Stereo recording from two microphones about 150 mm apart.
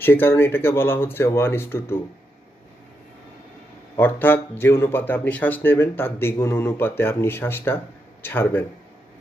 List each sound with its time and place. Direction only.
0.0 s a man's voice: 15° left (ahead or behind)
3.9 s a man's voice: 15° left (ahead or behind)